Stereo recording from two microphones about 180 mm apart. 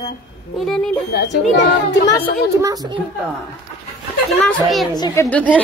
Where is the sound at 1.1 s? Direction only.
70° left (ahead or behind).